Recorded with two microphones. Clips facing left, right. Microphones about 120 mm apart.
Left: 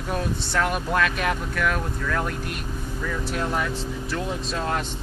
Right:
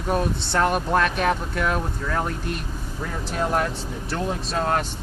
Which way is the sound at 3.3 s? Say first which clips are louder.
Right 5 dB; 40° right (ahead or behind).